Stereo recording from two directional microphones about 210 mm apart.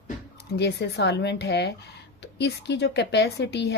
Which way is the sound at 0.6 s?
50° left (ahead or behind).